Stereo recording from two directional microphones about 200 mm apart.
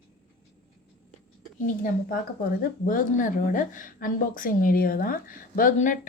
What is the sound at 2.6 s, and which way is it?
A woman's voice, 45° left (ahead or behind).